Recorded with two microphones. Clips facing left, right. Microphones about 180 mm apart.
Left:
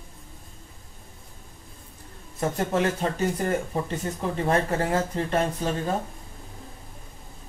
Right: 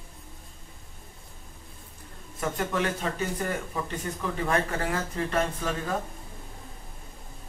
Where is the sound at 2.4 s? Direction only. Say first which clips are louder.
Left 4 dB; 30° left (ahead or behind).